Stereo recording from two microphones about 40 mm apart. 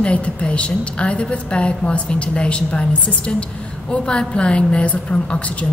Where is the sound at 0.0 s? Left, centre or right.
Left.